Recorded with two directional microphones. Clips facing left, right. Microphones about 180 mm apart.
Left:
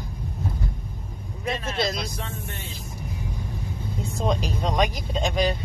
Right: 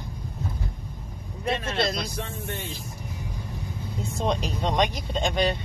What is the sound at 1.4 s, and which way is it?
Speech, centre (ahead or behind).